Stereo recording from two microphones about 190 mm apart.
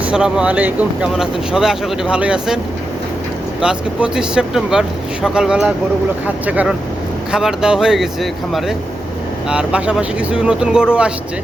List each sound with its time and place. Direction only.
0.0 s speech: 5° right (ahead or behind)
3.6 s speech: 5° right (ahead or behind)